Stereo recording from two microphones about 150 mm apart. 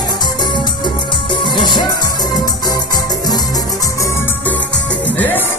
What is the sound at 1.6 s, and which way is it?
Music, 30° left (ahead or behind).